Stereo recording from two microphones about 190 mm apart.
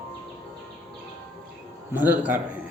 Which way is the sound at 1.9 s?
10° right (ahead or behind).